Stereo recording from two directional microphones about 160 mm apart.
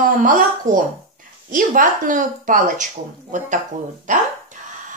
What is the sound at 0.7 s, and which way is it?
Speech, 20° right (ahead or behind).